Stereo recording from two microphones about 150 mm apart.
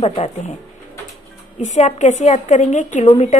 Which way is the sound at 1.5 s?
50° left (ahead or behind).